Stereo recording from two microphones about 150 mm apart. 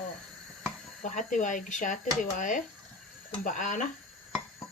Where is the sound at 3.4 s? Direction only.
60° left (ahead or behind).